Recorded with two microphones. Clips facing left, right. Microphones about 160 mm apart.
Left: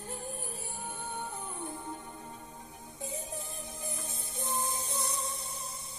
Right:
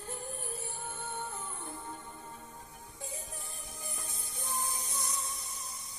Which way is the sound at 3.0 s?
20° left (ahead or behind).